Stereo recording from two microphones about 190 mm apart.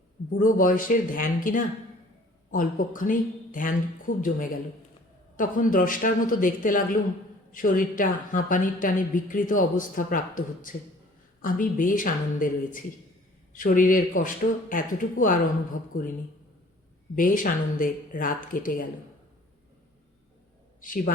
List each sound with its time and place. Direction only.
0.3 s a woman's voice: 45° left (ahead or behind)
17.2 s a woman's voice: 45° left (ahead or behind)
20.8 s a woman's voice: 45° left (ahead or behind)